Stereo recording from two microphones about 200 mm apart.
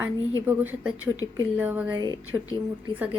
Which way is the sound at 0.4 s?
10° right (ahead or behind).